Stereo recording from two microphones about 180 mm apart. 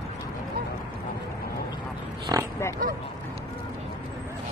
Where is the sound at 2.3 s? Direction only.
20° right (ahead or behind).